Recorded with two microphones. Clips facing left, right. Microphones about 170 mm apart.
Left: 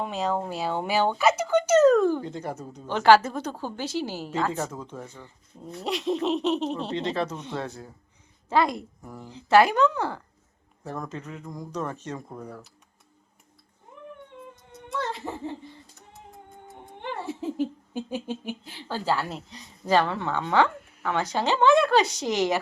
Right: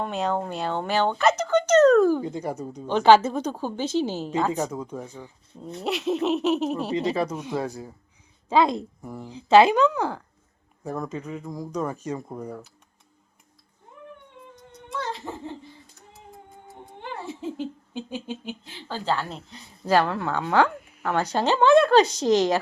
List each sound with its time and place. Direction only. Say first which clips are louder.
0.0 s speech: right 1 dB; centre (ahead or behind)
2.0 s a woman's voice: right 3 dB; 10° right (ahead or behind)
8.4 s a child's voice: right 3 dB; 20° right (ahead or behind)
9.0 s speech: right 3 dB; 10° right (ahead or behind)
14.5 s whimper: left 1 dB; centre (ahead or behind)
16.6 s music: even; centre (ahead or behind)
18.1 s a woman's voice: left 1 dB; 5° left (ahead or behind)
21.2 s speech: right 2 dB; 15° left (ahead or behind)